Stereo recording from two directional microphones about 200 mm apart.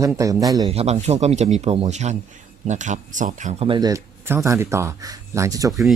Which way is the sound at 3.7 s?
20° right (ahead or behind).